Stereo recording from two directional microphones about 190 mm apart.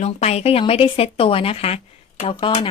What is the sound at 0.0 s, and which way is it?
A woman's voice, 35° left (ahead or behind).